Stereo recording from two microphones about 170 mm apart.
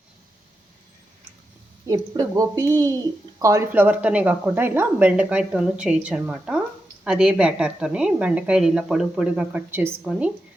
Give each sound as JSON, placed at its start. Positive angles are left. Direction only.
{"t": 1.9, "sound": "a woman's voice", "side_deg": -20}